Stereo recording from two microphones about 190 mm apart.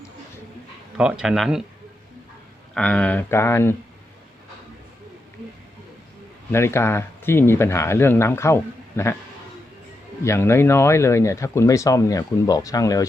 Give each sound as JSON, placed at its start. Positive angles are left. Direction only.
{"t": 0.9, "sound": "speech", "side_deg": -5}
{"t": 2.7, "sound": "speech", "side_deg": 5}
{"t": 6.5, "sound": "speech", "side_deg": 15}
{"t": 10.2, "sound": "speech", "side_deg": 15}